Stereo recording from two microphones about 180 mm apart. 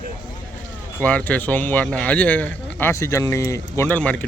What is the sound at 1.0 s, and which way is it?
Speech, 10° left (ahead or behind).